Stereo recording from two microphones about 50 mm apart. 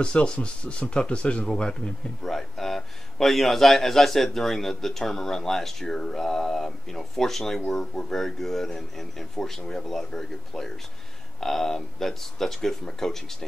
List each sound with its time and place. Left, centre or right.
0.0 s speech: centre
2.2 s a man's voice: centre